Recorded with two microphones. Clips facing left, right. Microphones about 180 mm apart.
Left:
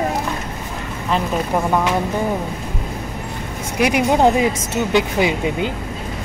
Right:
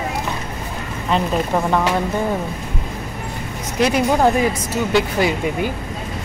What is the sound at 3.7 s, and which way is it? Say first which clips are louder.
Speech: left 1 dB; 15° left (ahead or behind).